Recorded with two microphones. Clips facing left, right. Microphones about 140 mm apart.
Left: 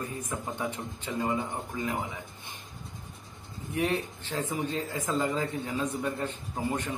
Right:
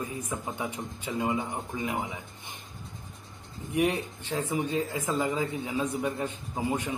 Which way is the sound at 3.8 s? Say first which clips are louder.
Right 2 dB; 15° right (ahead or behind).